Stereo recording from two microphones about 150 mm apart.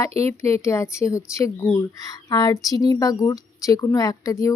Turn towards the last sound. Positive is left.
turn(degrees=20)  # may be behind; listen again after turning